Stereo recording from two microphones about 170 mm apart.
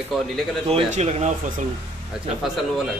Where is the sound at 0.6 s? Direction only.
35° right (ahead or behind).